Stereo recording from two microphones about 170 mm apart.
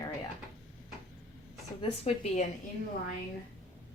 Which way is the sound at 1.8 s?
35° left (ahead or behind).